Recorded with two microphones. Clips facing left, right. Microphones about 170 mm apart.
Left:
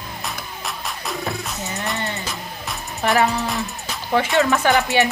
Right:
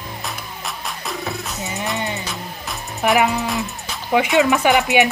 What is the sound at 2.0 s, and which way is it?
Speech, 15° right (ahead or behind).